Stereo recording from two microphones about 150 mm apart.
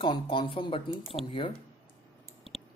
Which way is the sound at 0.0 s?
30° left (ahead or behind).